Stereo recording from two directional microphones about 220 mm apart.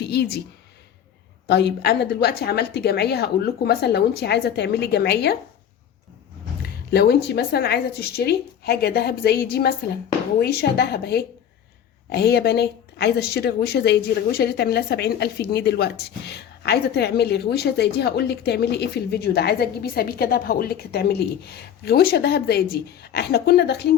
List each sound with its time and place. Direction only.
0.0 s speech: 50° left (ahead or behind)
1.5 s speech: 50° left (ahead or behind)
6.6 s speech: 45° left (ahead or behind)